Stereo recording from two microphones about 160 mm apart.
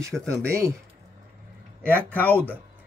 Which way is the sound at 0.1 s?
5° left (ahead or behind).